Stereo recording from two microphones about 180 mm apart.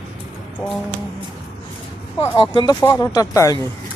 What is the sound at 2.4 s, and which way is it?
Speech, 25° left (ahead or behind).